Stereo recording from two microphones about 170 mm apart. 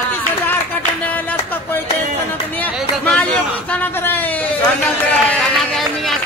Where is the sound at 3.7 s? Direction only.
10° left (ahead or behind).